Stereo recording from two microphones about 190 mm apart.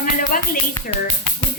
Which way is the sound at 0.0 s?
45° left (ahead or behind).